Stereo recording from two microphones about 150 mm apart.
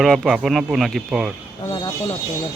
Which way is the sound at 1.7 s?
30° left (ahead or behind).